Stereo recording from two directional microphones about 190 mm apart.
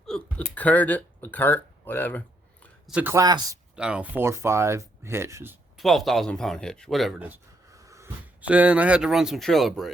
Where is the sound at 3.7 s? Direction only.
5° right (ahead or behind).